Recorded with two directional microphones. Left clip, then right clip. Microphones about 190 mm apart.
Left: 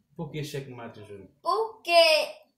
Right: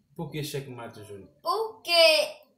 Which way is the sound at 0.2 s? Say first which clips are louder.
Right 1 dB; 15° right (ahead or behind).